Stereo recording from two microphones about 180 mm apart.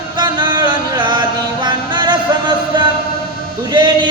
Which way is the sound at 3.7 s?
25° right (ahead or behind).